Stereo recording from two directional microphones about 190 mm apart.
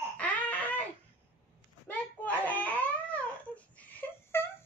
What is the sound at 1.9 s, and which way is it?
Baby cry, 10° left (ahead or behind).